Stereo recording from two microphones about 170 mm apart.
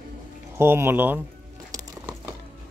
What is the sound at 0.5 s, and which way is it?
Speech, 15° right (ahead or behind).